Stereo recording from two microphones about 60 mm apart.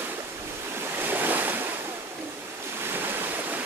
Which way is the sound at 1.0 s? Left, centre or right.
Right.